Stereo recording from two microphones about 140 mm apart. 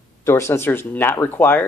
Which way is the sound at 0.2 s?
20° left (ahead or behind).